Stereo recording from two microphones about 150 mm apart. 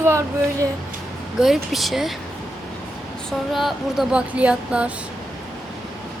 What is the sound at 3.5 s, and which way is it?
A woman's voice, centre (ahead or behind).